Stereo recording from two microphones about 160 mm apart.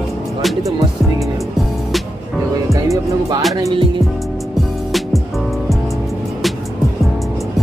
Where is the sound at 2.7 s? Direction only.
20° right (ahead or behind).